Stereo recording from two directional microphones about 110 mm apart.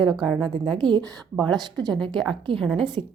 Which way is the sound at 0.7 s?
45° right (ahead or behind).